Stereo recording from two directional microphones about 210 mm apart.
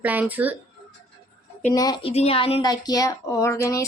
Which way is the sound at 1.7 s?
20° left (ahead or behind).